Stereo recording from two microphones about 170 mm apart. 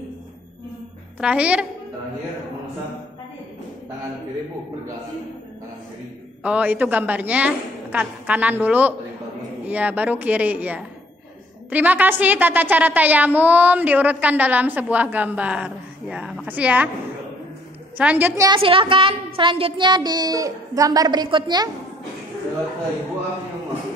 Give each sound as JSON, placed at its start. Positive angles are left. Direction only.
{"t": 1.2, "sound": "a woman's voice", "side_deg": -5}
{"t": 6.4, "sound": "a woman's voice", "side_deg": -10}
{"t": 17.9, "sound": "a woman's voice", "side_deg": -10}
{"t": 18.6, "sound": "speech", "side_deg": -30}